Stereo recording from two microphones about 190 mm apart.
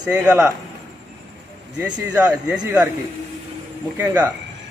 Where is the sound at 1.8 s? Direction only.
5° right (ahead or behind).